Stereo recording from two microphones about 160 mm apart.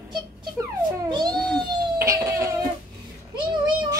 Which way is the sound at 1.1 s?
25° right (ahead or behind).